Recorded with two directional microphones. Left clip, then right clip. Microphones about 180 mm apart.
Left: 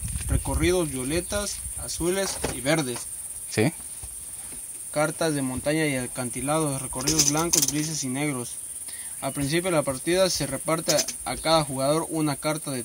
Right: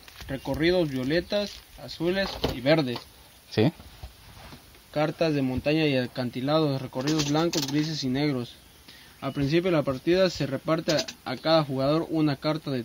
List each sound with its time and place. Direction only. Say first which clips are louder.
0.6 s speech: even; 55° right (ahead or behind)
3.4 s speech: even; 15° right (ahead or behind)
4.9 s speech: even; 55° right (ahead or behind)